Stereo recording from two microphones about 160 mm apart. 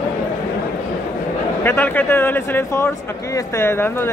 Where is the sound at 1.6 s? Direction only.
10° left (ahead or behind).